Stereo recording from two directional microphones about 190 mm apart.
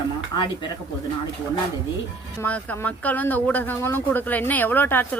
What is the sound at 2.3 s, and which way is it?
A woman's voice, 10° left (ahead or behind).